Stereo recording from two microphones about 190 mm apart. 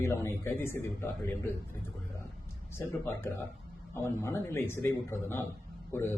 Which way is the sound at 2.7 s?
15° left (ahead or behind).